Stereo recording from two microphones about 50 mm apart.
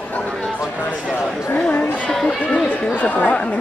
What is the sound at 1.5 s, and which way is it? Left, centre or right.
Speech, left.